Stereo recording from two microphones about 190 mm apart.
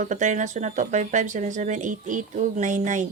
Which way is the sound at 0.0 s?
40° right (ahead or behind).